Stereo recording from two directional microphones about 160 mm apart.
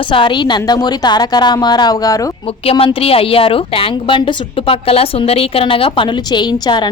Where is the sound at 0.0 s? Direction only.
30° left (ahead or behind).